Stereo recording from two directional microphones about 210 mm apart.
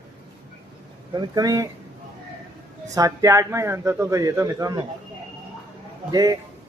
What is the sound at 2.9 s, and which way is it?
Speech, 15° right (ahead or behind).